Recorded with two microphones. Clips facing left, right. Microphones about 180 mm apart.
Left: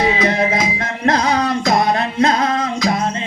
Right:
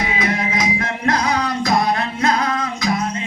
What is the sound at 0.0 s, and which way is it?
Music, 30° left (ahead or behind).